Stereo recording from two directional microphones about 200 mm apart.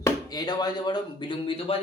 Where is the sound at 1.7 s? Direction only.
30° left (ahead or behind).